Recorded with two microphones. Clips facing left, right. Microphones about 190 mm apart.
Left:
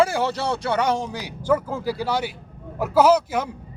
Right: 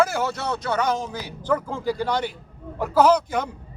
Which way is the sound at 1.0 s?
15° left (ahead or behind).